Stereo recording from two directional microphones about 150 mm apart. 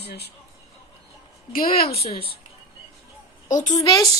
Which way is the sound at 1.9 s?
40° left (ahead or behind).